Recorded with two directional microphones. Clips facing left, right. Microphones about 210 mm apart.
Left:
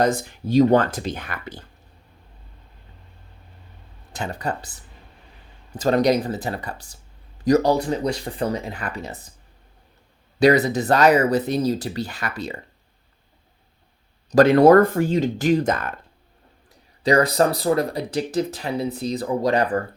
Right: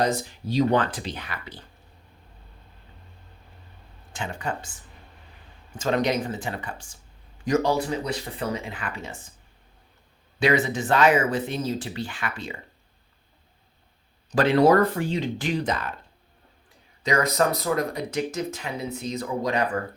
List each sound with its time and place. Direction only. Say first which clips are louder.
0.0 s speech: left 4 dB; 50° left (ahead or behind)
4.1 s speech: left 3 dB; 40° left (ahead or behind)
10.4 s speech: left 6 dB; 40° left (ahead or behind)
14.3 s speech: left 6 dB; 45° left (ahead or behind)
17.0 s speech: left 5 dB; 35° left (ahead or behind)